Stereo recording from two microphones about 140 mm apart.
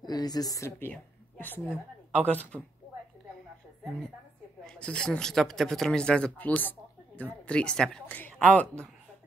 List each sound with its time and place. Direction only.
0.0 s a woman's voice: 30° left (ahead or behind); by 2.6 s 10° left (ahead or behind)
4.6 s speech: 5° left (ahead or behind)